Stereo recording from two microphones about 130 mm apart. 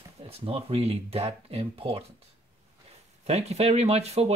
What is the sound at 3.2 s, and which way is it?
Speech, 55° right (ahead or behind).